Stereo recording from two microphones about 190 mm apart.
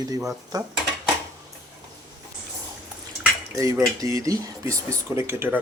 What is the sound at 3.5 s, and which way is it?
Speech, 20° right (ahead or behind).